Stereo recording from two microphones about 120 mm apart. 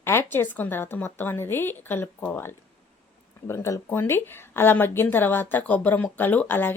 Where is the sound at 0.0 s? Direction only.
20° left (ahead or behind).